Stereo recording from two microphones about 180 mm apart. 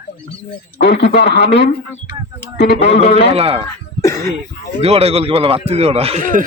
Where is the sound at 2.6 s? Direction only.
70° left (ahead or behind).